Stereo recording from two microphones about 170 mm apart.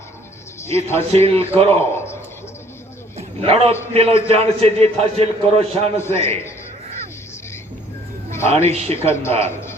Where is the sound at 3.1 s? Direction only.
35° right (ahead or behind).